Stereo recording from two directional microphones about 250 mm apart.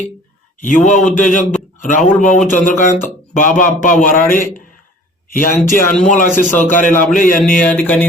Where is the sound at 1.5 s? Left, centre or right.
Left.